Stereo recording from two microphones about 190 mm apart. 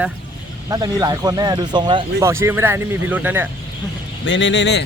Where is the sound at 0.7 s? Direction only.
20° right (ahead or behind).